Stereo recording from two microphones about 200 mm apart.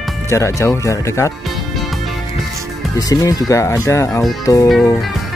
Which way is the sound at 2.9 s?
20° left (ahead or behind).